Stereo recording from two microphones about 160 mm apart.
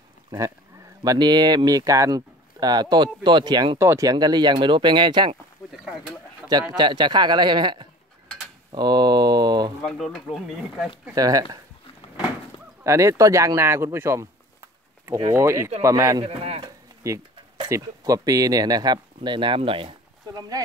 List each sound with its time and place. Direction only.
1.0 s speech: 25° right (ahead or behind)
5.7 s speech: 5° right (ahead or behind)
6.8 s speech: 30° right (ahead or behind)
9.8 s speech: centre (ahead or behind)
11.1 s speech: 20° right (ahead or behind)
12.8 s speech: 20° right (ahead or behind)
15.3 s speech: 15° right (ahead or behind)
16.3 s speech: 40° right (ahead or behind)
16.6 s speech: 20° right (ahead or behind)